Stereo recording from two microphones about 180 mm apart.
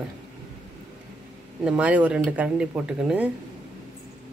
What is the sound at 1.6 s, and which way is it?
Speech, 5° right (ahead or behind).